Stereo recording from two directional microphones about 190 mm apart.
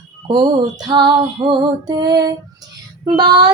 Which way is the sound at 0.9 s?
25° right (ahead or behind).